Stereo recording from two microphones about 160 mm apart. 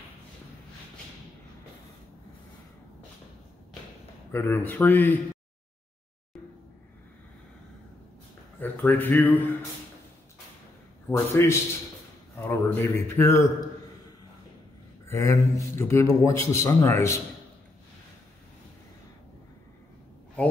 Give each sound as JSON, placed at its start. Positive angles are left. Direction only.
{"t": 4.3, "sound": "a man's voice", "side_deg": 15}
{"t": 8.5, "sound": "a man's voice", "side_deg": 10}
{"t": 11.1, "sound": "a man's voice", "side_deg": 15}
{"t": 15.0, "sound": "a man's voice", "side_deg": 20}